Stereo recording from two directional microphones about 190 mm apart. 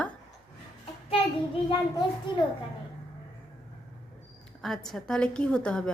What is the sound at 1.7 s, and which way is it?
Speech, 25° left (ahead or behind).